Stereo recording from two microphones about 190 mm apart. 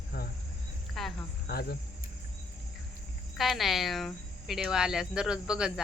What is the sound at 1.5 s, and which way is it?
Cricket, 55° left (ahead or behind).